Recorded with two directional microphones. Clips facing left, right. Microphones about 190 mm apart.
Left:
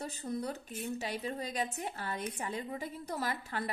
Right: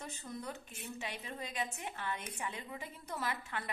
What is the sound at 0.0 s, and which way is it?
A woman's voice, 35° left (ahead or behind).